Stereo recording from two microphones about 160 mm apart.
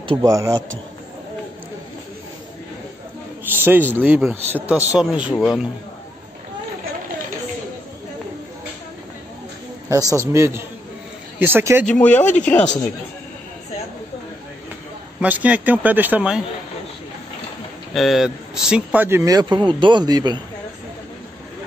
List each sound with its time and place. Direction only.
0.1 s speech: 20° right (ahead or behind)
3.5 s a man's voice: 10° right (ahead or behind)
9.8 s a man's voice: 20° right (ahead or behind)
11.8 s speech: 10° left (ahead or behind)
15.1 s a man's voice: 10° right (ahead or behind)
17.9 s speech: centre (ahead or behind); by 20.3 s 25° right (ahead or behind)